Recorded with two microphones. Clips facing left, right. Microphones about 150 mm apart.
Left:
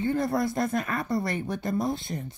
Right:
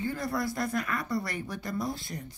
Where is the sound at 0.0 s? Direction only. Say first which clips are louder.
Left 6 dB; 25° left (ahead or behind).